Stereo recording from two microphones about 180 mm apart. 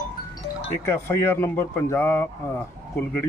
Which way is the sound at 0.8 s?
15° left (ahead or behind).